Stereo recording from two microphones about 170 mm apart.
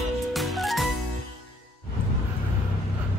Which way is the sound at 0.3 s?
Centre (ahead or behind).